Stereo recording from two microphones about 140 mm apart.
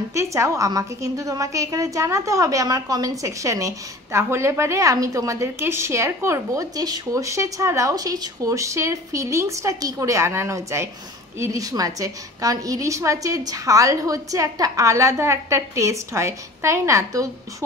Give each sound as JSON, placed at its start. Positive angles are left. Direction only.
{"t": 0.1, "sound": "a woman's voice", "side_deg": -20}